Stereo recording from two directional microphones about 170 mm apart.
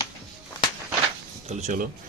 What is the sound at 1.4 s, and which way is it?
Speech, 45° right (ahead or behind).